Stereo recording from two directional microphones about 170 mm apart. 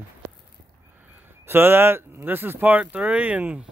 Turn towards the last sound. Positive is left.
turn(degrees=-10)  # may be behind; listen again after turning